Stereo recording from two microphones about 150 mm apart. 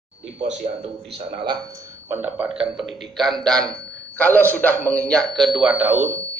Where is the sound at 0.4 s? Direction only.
45° right (ahead or behind).